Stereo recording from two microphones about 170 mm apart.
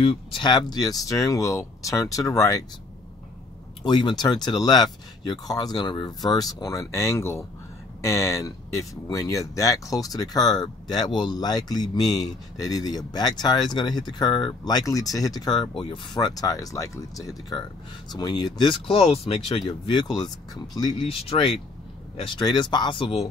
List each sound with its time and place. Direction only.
0.0 s speech: 35° left (ahead or behind)
3.8 s speech: 25° left (ahead or behind)